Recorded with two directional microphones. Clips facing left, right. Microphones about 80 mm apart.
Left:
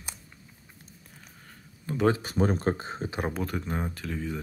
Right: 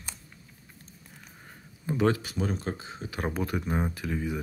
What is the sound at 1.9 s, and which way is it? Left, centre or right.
Speech, centre.